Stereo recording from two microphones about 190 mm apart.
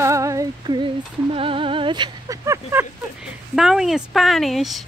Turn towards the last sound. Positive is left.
turn(degrees=0)  # may be behind; listen again after turning